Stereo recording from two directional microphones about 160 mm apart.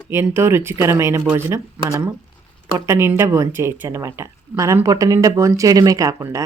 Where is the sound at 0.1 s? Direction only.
15° right (ahead or behind).